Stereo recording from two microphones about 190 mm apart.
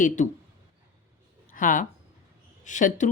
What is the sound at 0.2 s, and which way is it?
Speech, 40° left (ahead or behind).